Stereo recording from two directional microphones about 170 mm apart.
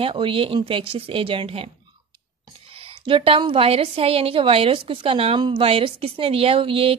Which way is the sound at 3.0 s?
30° right (ahead or behind).